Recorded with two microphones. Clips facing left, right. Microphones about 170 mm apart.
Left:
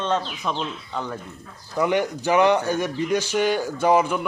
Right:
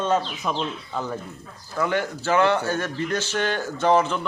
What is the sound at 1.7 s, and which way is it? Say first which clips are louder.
A man's voice: left 3 dB; 15° left (ahead or behind).